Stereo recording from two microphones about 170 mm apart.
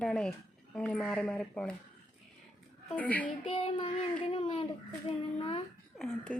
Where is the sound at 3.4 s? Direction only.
35° left (ahead or behind).